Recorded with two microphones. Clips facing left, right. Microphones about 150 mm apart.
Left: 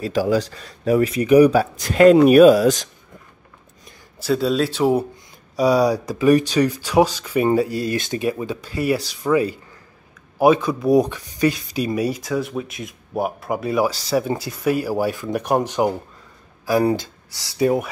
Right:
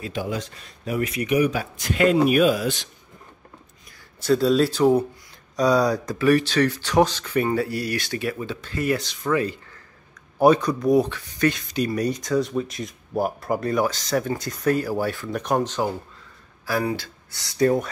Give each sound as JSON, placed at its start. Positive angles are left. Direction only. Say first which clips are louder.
{"t": 0.6, "sound": "speech", "louder": "left 8 dB", "side_deg": 35}
{"t": 4.2, "sound": "speech", "louder": "right 1 dB", "side_deg": 0}
{"t": 17.6, "sound": "speech", "louder": "left 1 dB", "side_deg": 10}